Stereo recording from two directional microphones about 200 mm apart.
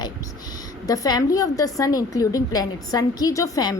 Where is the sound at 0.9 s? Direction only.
20° left (ahead or behind).